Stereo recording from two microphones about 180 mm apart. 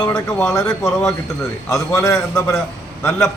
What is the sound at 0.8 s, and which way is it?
Speech, centre (ahead or behind).